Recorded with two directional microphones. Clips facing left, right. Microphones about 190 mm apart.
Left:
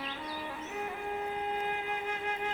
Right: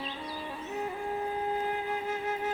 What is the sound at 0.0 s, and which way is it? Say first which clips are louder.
Music: right 1 dB; 20° right (ahead or behind).